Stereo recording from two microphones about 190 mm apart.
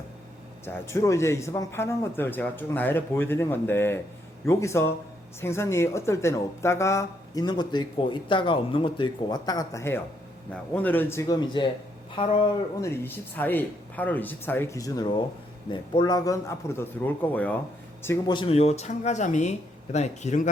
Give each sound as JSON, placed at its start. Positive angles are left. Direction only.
{"t": 0.6, "sound": "a man's voice", "side_deg": 15}
{"t": 12.8, "sound": "a man's voice", "side_deg": 10}
{"t": 18.3, "sound": "speech", "side_deg": 30}